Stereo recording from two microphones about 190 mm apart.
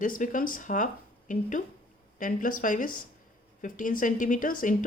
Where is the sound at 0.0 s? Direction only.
45° left (ahead or behind).